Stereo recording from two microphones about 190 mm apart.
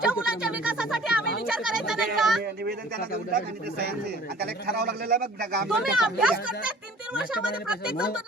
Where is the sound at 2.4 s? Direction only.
55° right (ahead or behind).